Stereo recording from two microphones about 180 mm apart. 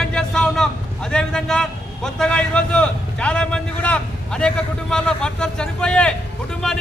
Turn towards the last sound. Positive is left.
turn(degrees=5)  # may be behind; listen again after turning